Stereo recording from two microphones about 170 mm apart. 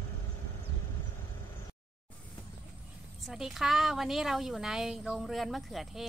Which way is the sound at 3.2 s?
Centre (ahead or behind).